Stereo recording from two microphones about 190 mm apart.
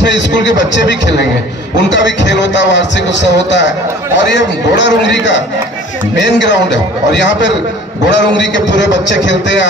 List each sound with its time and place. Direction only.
0.0 s a man's voice: 70° left (ahead or behind)